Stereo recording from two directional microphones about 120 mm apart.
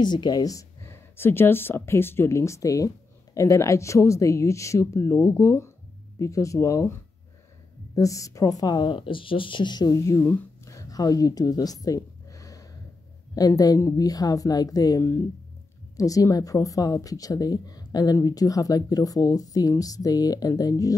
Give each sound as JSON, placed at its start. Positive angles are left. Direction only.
{"t": 0.0, "sound": "speech", "side_deg": 40}
{"t": 10.6, "sound": "a sound", "side_deg": 25}
{"t": 13.3, "sound": "speech", "side_deg": 30}